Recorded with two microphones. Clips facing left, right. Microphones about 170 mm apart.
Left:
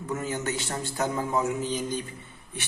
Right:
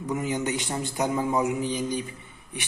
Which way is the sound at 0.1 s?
15° right (ahead or behind).